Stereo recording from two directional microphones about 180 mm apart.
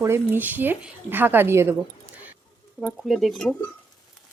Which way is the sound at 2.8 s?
Centre (ahead or behind).